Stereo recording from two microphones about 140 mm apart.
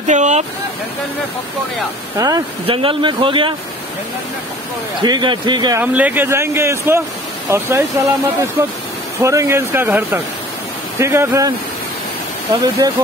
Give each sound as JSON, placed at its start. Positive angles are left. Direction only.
{"t": 0.0, "sound": "vehicle", "side_deg": -60}
{"t": 2.1, "sound": "speech", "side_deg": -25}
{"t": 2.6, "sound": "speech", "side_deg": -40}
{"t": 5.0, "sound": "speech", "side_deg": -30}
{"t": 5.8, "sound": "speech", "side_deg": -10}
{"t": 12.5, "sound": "speech", "side_deg": -25}